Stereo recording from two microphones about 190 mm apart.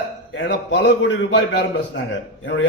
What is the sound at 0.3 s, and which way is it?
Speech, 65° left (ahead or behind).